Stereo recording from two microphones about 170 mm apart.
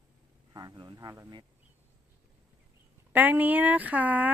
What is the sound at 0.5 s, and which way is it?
Speech, 20° right (ahead or behind).